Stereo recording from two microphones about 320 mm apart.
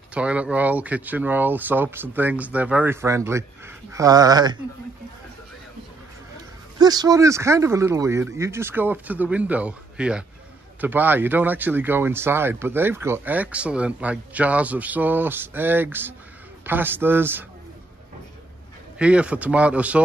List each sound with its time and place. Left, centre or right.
0.1 s speech: centre
6.8 s speech: centre
18.9 s speech: centre